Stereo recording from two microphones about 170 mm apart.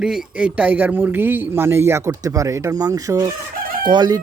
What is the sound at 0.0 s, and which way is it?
A man's voice, 5° right (ahead or behind).